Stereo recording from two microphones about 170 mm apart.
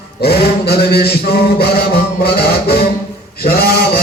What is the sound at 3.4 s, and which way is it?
Speech, 60° left (ahead or behind).